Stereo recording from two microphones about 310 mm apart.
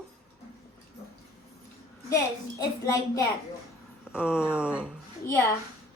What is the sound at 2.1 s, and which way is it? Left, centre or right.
A child's voice, centre.